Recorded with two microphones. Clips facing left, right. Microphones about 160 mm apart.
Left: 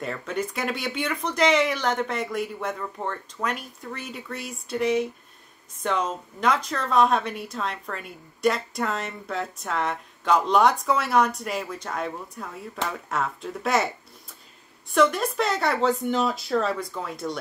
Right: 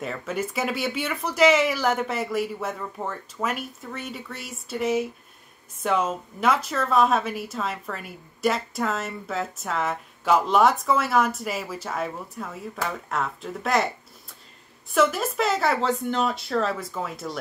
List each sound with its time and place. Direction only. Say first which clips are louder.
0.0 s speech: even; 5° right (ahead or behind)
15.0 s speech: left 1 dB; 5° right (ahead or behind)